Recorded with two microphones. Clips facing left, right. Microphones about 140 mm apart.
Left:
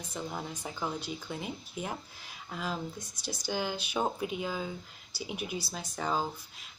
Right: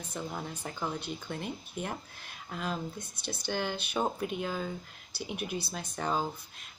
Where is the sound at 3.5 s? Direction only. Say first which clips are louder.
Even; 10° left (ahead or behind).